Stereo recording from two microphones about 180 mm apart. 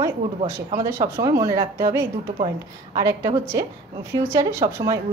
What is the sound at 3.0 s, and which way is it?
A woman's voice, 20° right (ahead or behind).